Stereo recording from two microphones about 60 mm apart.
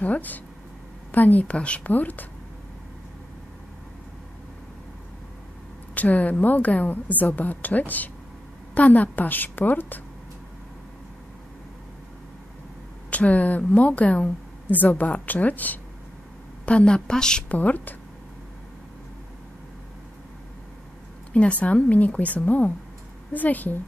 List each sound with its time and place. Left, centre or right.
0.0 s a woman's voice: left
5.9 s a woman's voice: left
13.1 s a woman's voice: left
16.6 s a woman's voice: centre
17.6 s a woman's voice: left
21.3 s a woman's voice: left